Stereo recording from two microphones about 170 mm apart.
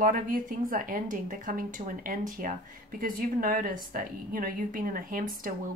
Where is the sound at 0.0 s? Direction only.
55° right (ahead or behind).